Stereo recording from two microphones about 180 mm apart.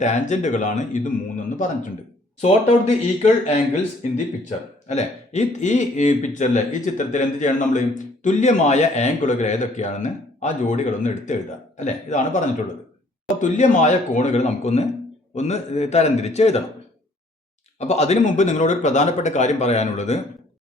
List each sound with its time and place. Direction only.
0.0 s speech: 40° left (ahead or behind)
4.0 s speech: 40° left (ahead or behind)
17.7 s speech: 40° left (ahead or behind)